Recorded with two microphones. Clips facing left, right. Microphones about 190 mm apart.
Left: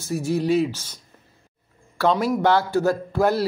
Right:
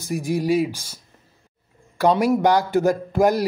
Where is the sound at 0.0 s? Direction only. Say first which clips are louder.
Even; 15° right (ahead or behind).